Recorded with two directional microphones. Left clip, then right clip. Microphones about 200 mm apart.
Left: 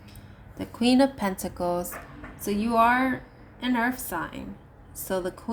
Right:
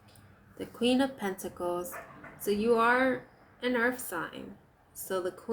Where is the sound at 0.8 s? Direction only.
40° left (ahead or behind).